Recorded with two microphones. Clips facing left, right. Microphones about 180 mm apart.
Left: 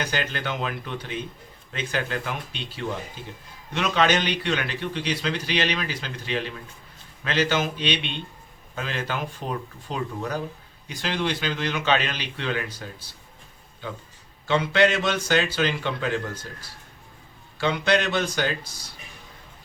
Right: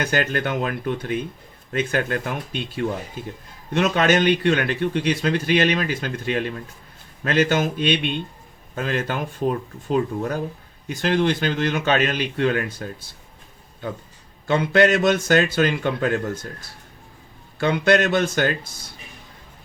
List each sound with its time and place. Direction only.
0.0 s a man's voice: 50° right (ahead or behind)
14.4 s a man's voice: 50° right (ahead or behind)
17.6 s a man's voice: 50° right (ahead or behind)